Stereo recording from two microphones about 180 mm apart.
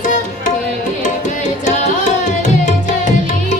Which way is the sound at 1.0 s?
40° left (ahead or behind).